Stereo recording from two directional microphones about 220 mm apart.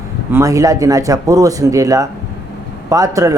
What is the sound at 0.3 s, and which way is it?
Speech, 15° right (ahead or behind).